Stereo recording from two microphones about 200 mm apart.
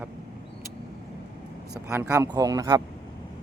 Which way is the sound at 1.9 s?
10° right (ahead or behind).